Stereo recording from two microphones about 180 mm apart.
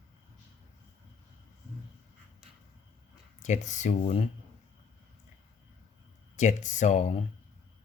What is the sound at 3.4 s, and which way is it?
Speech, 40° left (ahead or behind).